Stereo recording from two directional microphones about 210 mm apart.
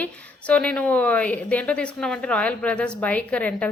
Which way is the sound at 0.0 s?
5° left (ahead or behind).